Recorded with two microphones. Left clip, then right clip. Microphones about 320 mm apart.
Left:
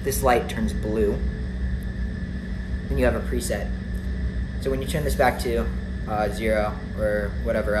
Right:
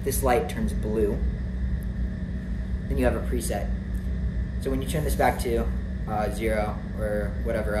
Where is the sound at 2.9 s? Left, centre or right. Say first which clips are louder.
Left 3 dB; centre.